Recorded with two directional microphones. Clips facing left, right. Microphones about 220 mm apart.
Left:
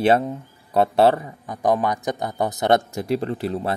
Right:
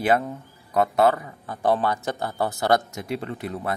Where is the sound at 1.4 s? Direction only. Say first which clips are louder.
Left 1 dB; 15° left (ahead or behind).